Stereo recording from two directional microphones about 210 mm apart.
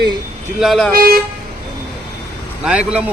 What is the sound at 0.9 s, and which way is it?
Speech, 45° right (ahead or behind).